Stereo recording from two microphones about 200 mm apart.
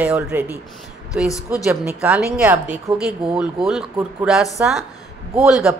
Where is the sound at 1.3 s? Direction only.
15° left (ahead or behind).